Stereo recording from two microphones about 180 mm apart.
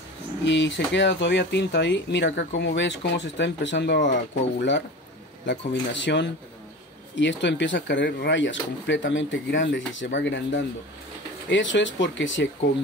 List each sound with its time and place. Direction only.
0.5 s speech: 85° left